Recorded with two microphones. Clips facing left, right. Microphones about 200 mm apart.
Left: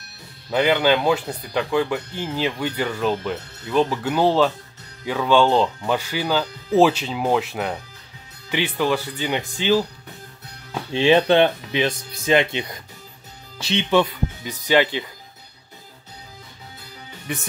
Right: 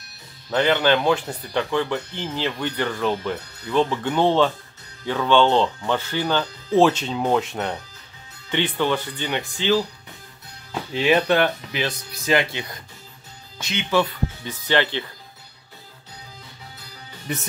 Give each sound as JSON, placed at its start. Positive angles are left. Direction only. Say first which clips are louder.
{"t": 0.5, "sound": "speech", "louder": "left 1 dB", "side_deg": 10}
{"t": 10.9, "sound": "speech", "louder": "left 3 dB", "side_deg": 25}
{"t": 13.8, "sound": "speech", "louder": "left 1 dB", "side_deg": 20}